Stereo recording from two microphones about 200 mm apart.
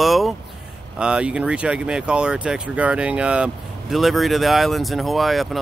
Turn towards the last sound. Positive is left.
turn(degrees=0)  # may be behind; listen again after turning